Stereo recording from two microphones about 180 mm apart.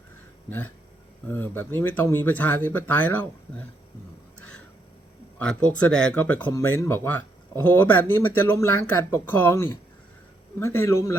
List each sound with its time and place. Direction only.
1.3 s speech: 10° left (ahead or behind)
5.4 s speech: 5° left (ahead or behind)